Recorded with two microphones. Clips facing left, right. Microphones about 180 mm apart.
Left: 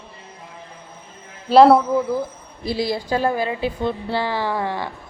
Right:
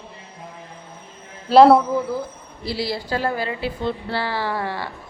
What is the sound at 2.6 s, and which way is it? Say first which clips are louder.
A woman's voice: left 3 dB; 15° left (ahead or behind).